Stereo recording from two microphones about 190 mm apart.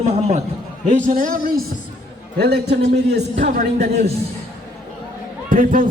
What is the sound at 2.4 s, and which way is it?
A man's voice, 60° right (ahead or behind).